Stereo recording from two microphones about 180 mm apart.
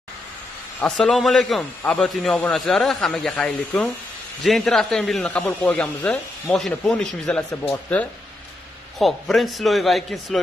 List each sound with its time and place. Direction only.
0.7 s a man's voice: 5° left (ahead or behind)